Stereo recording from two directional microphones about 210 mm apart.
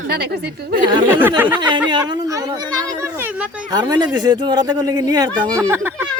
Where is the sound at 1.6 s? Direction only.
20° right (ahead or behind).